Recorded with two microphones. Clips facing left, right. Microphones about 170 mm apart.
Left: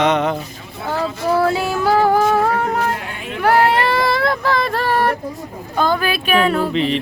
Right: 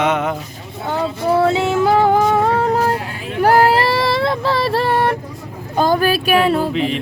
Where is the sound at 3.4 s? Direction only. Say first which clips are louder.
Right 2 dB; 40° right (ahead or behind).